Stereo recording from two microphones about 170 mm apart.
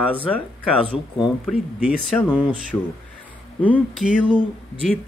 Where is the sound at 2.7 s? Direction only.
20° left (ahead or behind).